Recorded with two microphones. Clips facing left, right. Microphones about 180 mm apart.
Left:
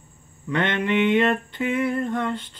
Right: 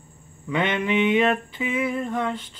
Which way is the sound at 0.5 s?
5° right (ahead or behind).